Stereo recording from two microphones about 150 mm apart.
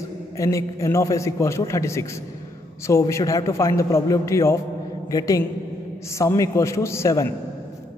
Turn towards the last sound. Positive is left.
turn(degrees=20)  # may be behind; listen again after turning